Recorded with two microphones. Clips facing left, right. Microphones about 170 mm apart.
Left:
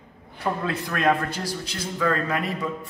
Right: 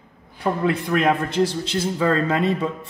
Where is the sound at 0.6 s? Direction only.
20° right (ahead or behind).